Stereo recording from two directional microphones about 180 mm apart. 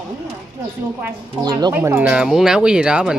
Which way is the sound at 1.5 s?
25° right (ahead or behind).